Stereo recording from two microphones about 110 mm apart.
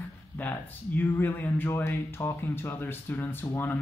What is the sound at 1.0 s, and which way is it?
Speech, 20° left (ahead or behind).